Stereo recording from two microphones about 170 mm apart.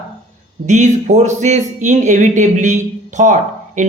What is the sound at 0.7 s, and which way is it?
Speech, 45° right (ahead or behind).